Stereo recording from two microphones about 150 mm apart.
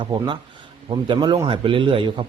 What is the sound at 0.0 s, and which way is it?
A man's voice, 30° right (ahead or behind).